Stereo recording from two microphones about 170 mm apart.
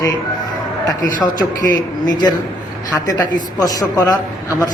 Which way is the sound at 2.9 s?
20° left (ahead or behind).